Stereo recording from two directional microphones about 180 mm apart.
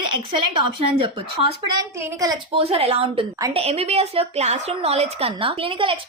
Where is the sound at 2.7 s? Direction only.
35° right (ahead or behind).